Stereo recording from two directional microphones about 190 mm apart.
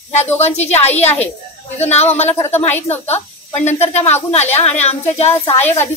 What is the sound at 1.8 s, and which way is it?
Speech, 35° left (ahead or behind).